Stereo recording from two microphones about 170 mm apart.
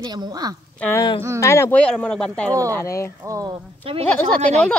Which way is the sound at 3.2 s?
20° right (ahead or behind).